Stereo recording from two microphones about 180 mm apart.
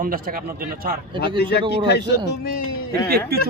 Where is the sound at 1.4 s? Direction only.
65° left (ahead or behind).